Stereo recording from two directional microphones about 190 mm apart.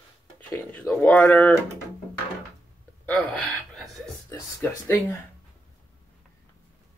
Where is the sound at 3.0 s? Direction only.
5° left (ahead or behind).